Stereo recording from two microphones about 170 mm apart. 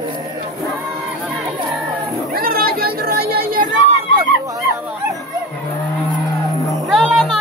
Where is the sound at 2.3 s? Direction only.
60° right (ahead or behind).